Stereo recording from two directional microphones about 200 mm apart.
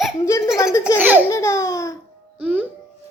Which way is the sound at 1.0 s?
10° right (ahead or behind).